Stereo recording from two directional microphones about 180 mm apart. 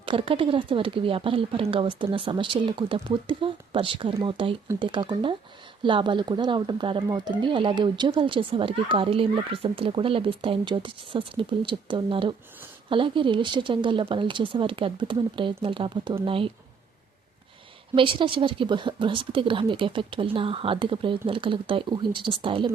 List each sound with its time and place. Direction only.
0.0 s speech: 30° right (ahead or behind)
17.9 s speech: 30° right (ahead or behind)